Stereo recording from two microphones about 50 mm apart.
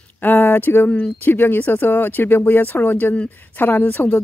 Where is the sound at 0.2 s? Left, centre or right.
Left.